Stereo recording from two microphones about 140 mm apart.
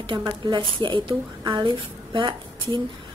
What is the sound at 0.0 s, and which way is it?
A woman's voice, 35° right (ahead or behind).